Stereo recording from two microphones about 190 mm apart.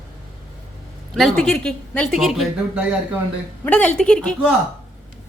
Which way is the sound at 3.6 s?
5° left (ahead or behind).